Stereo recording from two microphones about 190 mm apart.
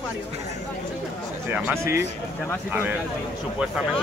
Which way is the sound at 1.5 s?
10° right (ahead or behind).